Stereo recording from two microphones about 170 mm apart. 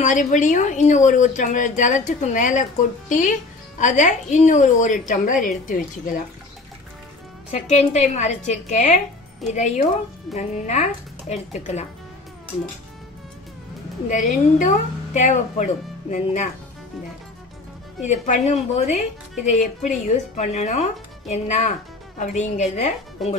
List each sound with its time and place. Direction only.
0.0 s a woman's voice: 50° left (ahead or behind)
7.5 s a woman's voice: 40° left (ahead or behind)
14.0 s a woman's voice: 45° left (ahead or behind)
18.0 s a woman's voice: 45° left (ahead or behind)
23.2 s speech: centre (ahead or behind)